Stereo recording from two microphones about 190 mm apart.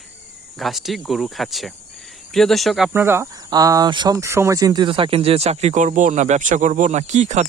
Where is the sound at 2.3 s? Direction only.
Centre (ahead or behind).